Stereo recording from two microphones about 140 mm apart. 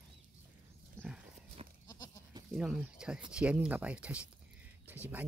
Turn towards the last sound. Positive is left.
turn(degrees=-15)  # may be behind; listen again after turning